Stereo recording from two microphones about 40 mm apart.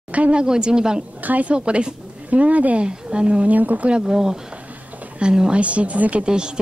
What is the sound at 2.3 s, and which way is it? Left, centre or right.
Speech, right.